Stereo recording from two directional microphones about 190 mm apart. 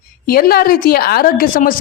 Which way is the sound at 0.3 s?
50° left (ahead or behind).